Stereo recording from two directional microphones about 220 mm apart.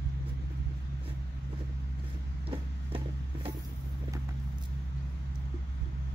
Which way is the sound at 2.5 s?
25° right (ahead or behind).